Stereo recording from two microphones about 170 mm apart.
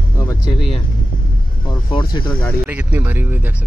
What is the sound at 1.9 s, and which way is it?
Speech, 30° left (ahead or behind).